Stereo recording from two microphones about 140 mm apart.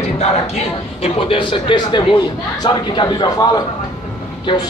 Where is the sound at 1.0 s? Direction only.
40° left (ahead or behind).